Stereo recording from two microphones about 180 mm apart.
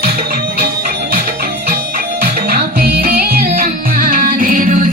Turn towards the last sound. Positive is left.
turn(degrees=-45)  # may be behind; listen again after turning